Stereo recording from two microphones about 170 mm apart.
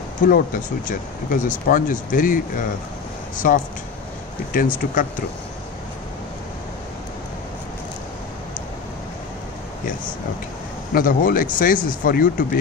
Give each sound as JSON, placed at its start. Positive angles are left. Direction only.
{"t": 0.2, "sound": "speech", "side_deg": 55}
{"t": 10.9, "sound": "speech", "side_deg": 55}